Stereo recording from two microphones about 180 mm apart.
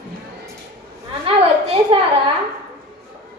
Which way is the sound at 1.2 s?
30° right (ahead or behind).